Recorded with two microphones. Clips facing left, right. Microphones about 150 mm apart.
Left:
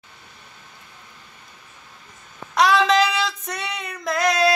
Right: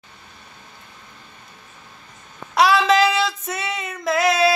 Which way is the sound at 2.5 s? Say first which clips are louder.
Right 1 dB; 5° right (ahead or behind).